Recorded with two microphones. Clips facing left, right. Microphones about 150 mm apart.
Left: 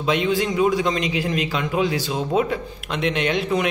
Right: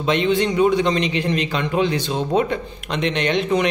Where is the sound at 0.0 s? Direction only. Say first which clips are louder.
Right 2 dB; centre (ahead or behind).